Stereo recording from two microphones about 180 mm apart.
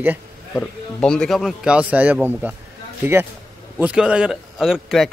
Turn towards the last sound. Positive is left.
turn(degrees=0)  # may be behind; listen again after turning